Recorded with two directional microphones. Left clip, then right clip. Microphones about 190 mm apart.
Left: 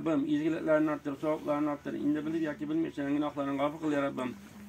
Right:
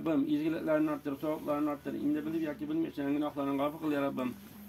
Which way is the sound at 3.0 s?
15° right (ahead or behind).